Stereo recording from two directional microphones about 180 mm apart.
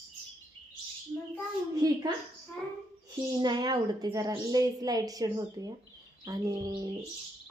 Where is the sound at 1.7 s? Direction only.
20° right (ahead or behind).